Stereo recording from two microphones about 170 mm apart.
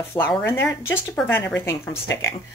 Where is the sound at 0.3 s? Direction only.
10° left (ahead or behind).